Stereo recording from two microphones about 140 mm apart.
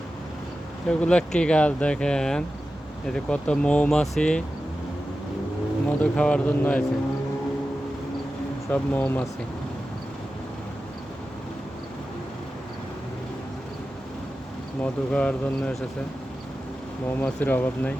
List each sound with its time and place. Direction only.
0.9 s speech: 5° left (ahead or behind)
6.0 s speech: 5° left (ahead or behind)
8.7 s speech: 10° left (ahead or behind)
14.8 s speech: 10° left (ahead or behind)
17.2 s speech: 10° left (ahead or behind)